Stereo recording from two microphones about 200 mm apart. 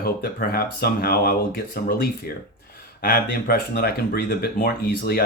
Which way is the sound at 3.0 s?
50° left (ahead or behind).